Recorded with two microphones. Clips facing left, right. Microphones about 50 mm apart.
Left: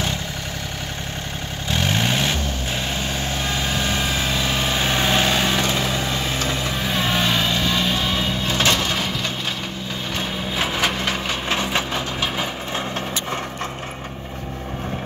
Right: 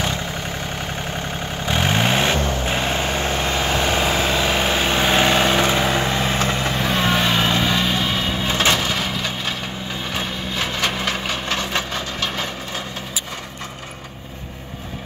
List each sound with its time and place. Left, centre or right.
1.7 s vehicle: right
4.0 s vehicle: right
6.8 s vehicle: centre
8.8 s wood: centre
10.6 s wood: centre
11.4 s vehicle: centre